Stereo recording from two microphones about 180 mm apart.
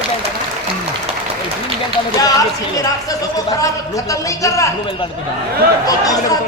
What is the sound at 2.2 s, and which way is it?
A man's voice, 20° left (ahead or behind).